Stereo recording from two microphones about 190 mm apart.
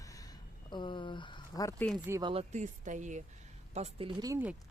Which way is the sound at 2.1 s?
20° right (ahead or behind).